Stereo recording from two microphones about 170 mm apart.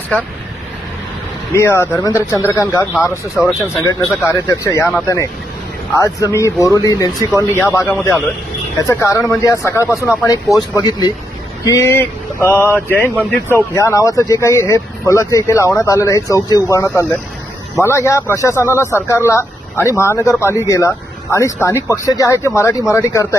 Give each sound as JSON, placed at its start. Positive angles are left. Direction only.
{"t": 0.1, "sound": "speech", "side_deg": 5}
{"t": 1.5, "sound": "speech", "side_deg": 15}